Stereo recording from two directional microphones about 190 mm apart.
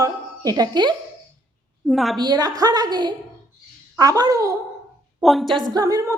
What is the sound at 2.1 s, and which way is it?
Speech, 20° right (ahead or behind).